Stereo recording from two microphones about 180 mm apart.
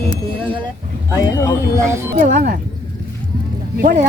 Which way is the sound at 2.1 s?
50° right (ahead or behind).